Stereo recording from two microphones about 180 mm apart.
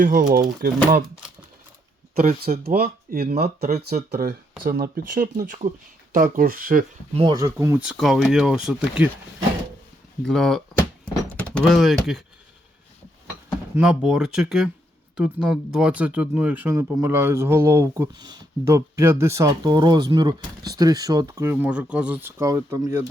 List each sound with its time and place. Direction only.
0.0 s speech: 45° right (ahead or behind)
2.1 s speech: 55° right (ahead or behind)
7.1 s speech: 25° right (ahead or behind); by 9.0 s 5° right (ahead or behind)
10.2 s speech: centre (ahead or behind)
13.7 s speech: 5° right (ahead or behind)